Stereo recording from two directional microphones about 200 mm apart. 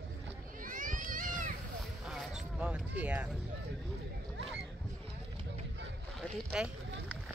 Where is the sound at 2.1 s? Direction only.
5° right (ahead or behind).